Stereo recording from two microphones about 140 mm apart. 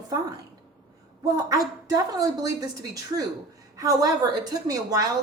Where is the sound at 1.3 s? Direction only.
25° right (ahead or behind).